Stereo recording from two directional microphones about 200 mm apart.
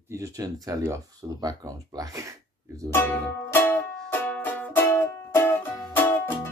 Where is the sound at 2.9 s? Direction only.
10° left (ahead or behind).